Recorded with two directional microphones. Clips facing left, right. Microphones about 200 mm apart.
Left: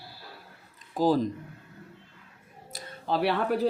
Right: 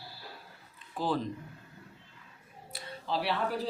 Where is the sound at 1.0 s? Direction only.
40° left (ahead or behind).